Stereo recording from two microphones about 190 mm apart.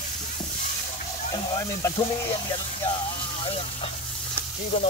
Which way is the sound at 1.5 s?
20° left (ahead or behind).